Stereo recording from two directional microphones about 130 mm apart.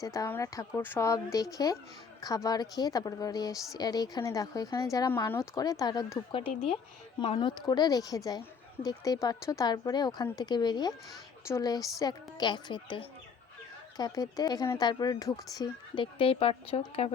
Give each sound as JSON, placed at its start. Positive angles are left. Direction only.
{"t": 0.0, "sound": "speech", "side_deg": 25}
{"t": 7.3, "sound": "speech", "side_deg": 30}